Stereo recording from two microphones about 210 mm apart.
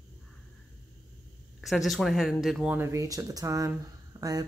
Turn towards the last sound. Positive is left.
turn(degrees=-15)  # may be behind; listen again after turning